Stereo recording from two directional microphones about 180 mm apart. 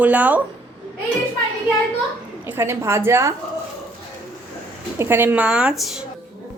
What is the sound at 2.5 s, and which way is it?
Speech, 15° right (ahead or behind).